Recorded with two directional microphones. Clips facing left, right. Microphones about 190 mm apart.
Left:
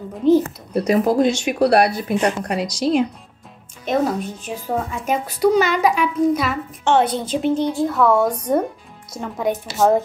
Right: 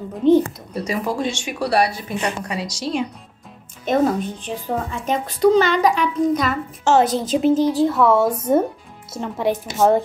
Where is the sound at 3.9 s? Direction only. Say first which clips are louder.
Right 2 dB; centre (ahead or behind).